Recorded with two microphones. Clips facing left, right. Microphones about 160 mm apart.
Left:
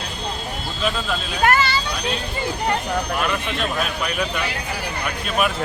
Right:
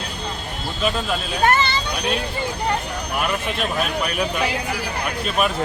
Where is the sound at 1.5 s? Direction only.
20° right (ahead or behind).